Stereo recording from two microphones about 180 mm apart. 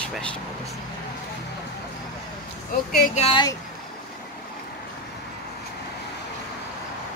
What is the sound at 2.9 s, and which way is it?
Speech, 50° left (ahead or behind).